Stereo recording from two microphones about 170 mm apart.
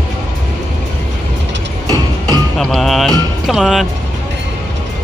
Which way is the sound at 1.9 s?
20° right (ahead or behind).